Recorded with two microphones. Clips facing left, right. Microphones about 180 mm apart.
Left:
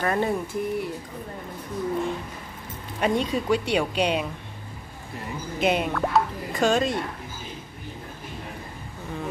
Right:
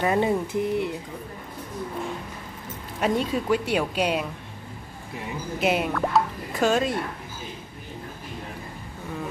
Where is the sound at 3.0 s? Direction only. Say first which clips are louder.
Even; 5° right (ahead or behind).